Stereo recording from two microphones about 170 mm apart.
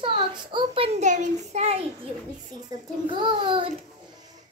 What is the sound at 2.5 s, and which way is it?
A child's voice, 25° right (ahead or behind).